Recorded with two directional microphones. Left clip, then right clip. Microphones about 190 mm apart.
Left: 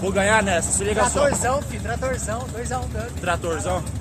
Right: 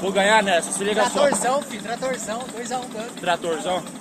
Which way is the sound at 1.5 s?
15° left (ahead or behind).